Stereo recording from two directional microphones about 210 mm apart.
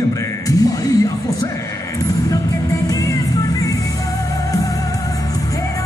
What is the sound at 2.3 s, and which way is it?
Music, 15° left (ahead or behind).